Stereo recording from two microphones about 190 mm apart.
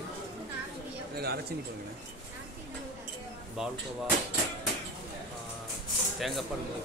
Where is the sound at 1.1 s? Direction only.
55° right (ahead or behind).